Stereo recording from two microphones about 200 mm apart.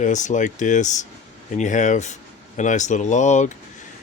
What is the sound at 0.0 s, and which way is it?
Speech, 40° left (ahead or behind).